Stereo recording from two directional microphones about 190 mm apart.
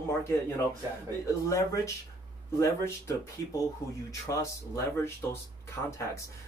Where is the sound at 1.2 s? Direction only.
15° left (ahead or behind).